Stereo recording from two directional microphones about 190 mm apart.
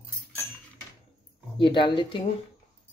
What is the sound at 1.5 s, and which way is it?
Speech, 25° left (ahead or behind).